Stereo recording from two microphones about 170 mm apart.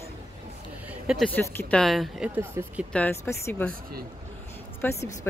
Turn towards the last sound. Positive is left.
turn(degrees=15)  # may be behind; listen again after turning